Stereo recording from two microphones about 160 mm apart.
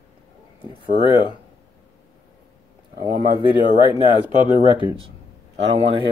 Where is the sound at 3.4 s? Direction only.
30° left (ahead or behind).